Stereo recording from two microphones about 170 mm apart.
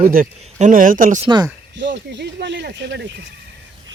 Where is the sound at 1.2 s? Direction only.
25° right (ahead or behind).